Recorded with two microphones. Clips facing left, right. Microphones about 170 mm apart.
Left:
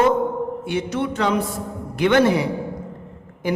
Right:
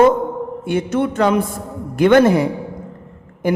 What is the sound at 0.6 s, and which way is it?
A woman's voice, 50° right (ahead or behind).